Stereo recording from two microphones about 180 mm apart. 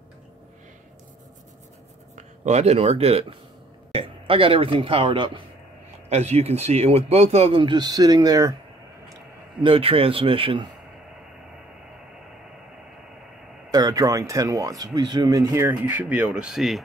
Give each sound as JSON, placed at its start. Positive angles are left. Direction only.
{"t": 2.1, "sound": "a man's voice", "side_deg": -40}
{"t": 13.7, "sound": "speech", "side_deg": -20}